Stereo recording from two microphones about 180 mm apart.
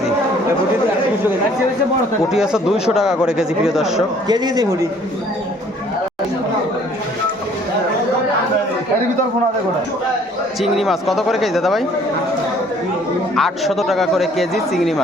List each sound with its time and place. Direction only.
2.3 s speech: 5° right (ahead or behind)
4.3 s speech: 20° right (ahead or behind)
10.6 s speech: centre (ahead or behind)
13.3 s speech: centre (ahead or behind)